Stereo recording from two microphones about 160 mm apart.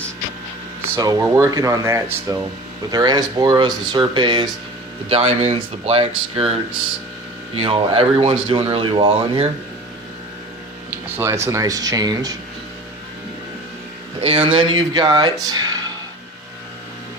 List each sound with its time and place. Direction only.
0.9 s speech: 20° right (ahead or behind); by 6.5 s 35° right (ahead or behind)
7.5 s speech: 35° right (ahead or behind)
11.4 s speech: 20° right (ahead or behind)
14.2 s speech: 40° right (ahead or behind)